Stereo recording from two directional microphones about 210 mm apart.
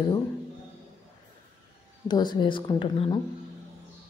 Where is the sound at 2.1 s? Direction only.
20° left (ahead or behind).